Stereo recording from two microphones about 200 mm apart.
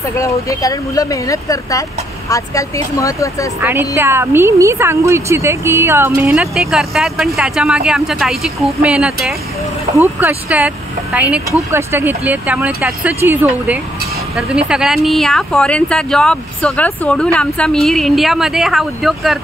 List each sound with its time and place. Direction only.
0.2 s speech: 15° left (ahead or behind)
3.9 s speech: 10° right (ahead or behind)